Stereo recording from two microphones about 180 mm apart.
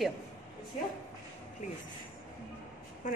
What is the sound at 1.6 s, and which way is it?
Speech, 40° left (ahead or behind).